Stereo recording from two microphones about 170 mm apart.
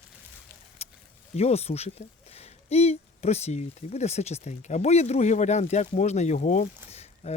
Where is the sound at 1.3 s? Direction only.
40° left (ahead or behind).